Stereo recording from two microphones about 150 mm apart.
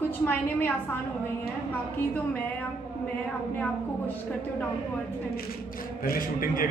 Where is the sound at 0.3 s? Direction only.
15° left (ahead or behind).